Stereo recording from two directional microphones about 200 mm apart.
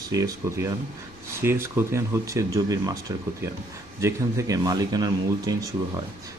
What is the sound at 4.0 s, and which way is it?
Speech, 15° right (ahead or behind).